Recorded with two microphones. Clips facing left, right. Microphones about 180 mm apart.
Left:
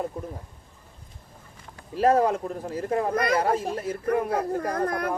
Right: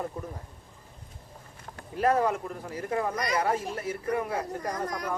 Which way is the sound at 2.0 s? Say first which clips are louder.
Left 4 dB; 35° left (ahead or behind).